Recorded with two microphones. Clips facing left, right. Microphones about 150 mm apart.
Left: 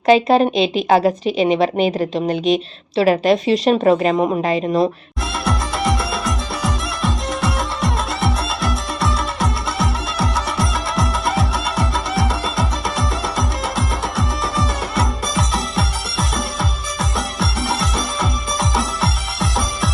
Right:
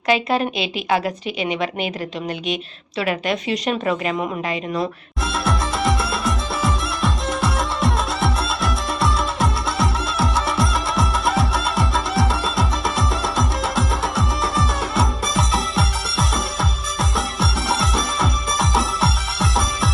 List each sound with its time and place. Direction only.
0.0 s a woman's voice: 35° left (ahead or behind)
5.2 s music: centre (ahead or behind)